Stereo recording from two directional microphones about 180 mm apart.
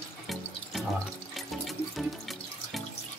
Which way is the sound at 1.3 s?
Centre (ahead or behind).